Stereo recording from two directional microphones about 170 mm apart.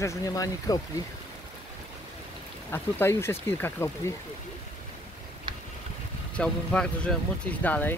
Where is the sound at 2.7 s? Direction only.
15° left (ahead or behind).